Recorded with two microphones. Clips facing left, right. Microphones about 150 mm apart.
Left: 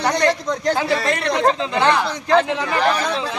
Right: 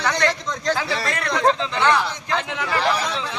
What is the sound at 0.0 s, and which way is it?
Speech, 35° left (ahead or behind).